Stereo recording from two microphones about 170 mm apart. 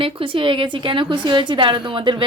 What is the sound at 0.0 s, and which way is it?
A woman's voice, 30° right (ahead or behind).